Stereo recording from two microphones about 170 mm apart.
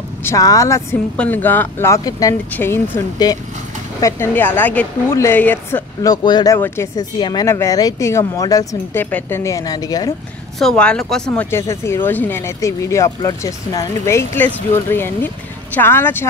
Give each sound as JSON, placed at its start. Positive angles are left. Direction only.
{"t": 0.2, "sound": "speech", "side_deg": 20}
{"t": 6.2, "sound": "speech", "side_deg": 25}
{"t": 10.6, "sound": "speech", "side_deg": 5}
{"t": 11.5, "sound": "speech", "side_deg": 15}